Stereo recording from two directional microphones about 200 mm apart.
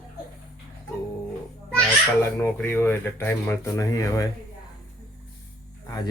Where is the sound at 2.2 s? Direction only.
10° left (ahead or behind).